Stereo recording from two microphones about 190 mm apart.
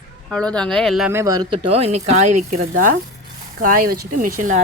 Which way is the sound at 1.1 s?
15° right (ahead or behind).